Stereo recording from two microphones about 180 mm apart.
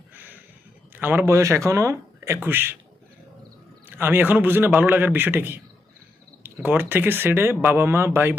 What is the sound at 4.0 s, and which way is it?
Speech, 10° right (ahead or behind).